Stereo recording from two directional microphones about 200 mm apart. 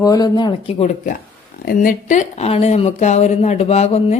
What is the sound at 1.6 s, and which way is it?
A woman's voice, 40° left (ahead or behind).